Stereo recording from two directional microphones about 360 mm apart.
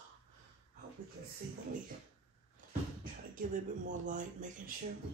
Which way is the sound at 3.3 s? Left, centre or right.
Right.